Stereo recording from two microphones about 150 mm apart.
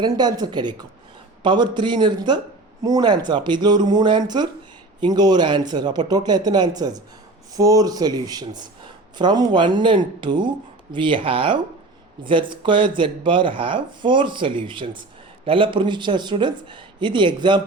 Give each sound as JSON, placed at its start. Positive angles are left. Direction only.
{"t": 0.0, "sound": "speech", "side_deg": -25}